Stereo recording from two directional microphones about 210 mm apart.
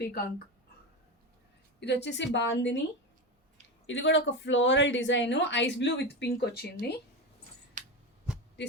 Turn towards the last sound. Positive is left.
turn(degrees=-35)  # may be behind; listen again after turning